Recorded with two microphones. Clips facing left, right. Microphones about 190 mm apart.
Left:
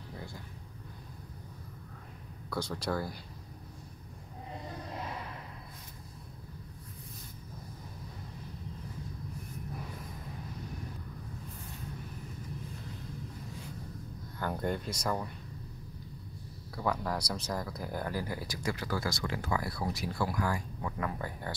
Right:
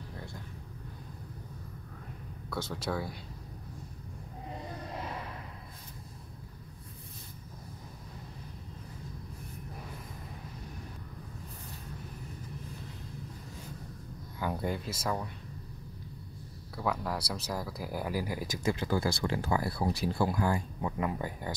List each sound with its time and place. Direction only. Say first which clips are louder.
0.1 s vehicle: left 2 dB; centre (ahead or behind)
2.5 s speech: left 1 dB; centre (ahead or behind)
14.4 s speech: even; 5° right (ahead or behind)
16.7 s speech: even; centre (ahead or behind); by 21.5 s 15° right (ahead or behind)